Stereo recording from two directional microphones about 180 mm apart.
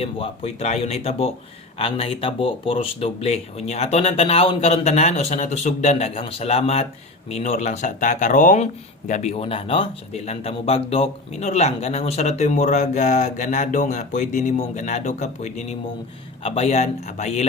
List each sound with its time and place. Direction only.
0.0 s speech: 35° left (ahead or behind)